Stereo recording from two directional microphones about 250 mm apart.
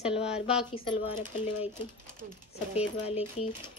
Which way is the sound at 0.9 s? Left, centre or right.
Centre.